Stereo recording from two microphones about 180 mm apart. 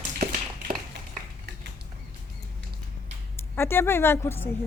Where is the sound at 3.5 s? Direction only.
15° left (ahead or behind).